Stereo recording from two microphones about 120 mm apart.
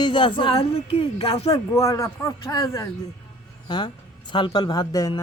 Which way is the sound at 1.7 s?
25° left (ahead or behind).